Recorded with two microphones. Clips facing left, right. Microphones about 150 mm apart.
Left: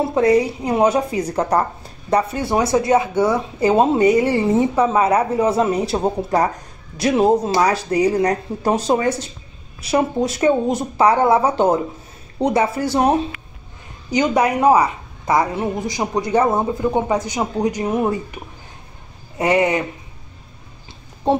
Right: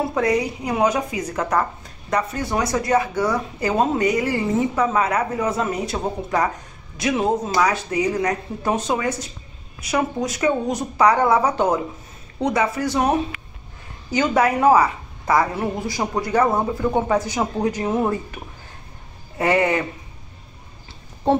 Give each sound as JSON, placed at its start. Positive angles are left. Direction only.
{"t": 0.1, "sound": "speech", "side_deg": 25}
{"t": 14.1, "sound": "a woman's voice", "side_deg": 15}
{"t": 19.3, "sound": "speech", "side_deg": 20}